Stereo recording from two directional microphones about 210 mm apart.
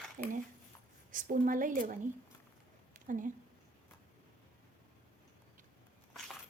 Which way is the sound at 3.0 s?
40° right (ahead or behind).